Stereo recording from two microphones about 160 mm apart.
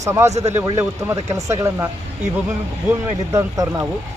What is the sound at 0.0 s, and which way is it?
Speech, 20° right (ahead or behind).